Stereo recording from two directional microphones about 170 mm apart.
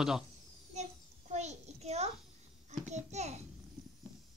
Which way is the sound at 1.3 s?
40° right (ahead or behind).